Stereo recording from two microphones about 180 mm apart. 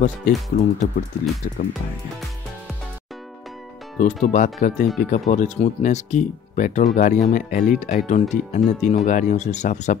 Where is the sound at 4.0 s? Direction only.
45° left (ahead or behind).